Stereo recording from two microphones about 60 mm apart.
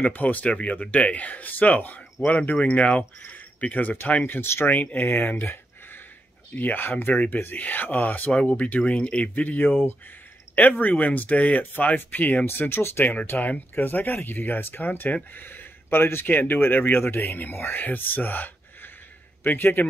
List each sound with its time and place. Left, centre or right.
0.0 s speech: left
5.3 s a sound: left
6.5 s speech: left
10.8 s speech: left
12.4 s speech: left